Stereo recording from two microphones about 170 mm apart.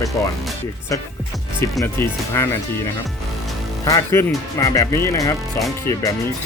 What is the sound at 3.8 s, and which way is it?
Speech, 20° left (ahead or behind).